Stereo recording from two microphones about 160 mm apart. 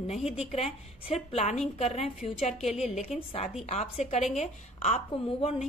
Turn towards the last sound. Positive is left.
turn(degrees=45)  # may be behind; listen again after turning